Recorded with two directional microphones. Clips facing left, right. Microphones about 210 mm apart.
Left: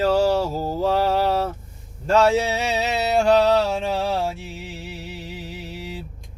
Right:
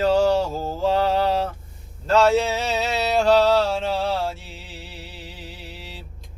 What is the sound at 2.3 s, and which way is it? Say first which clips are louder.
Speech: even; 15° left (ahead or behind).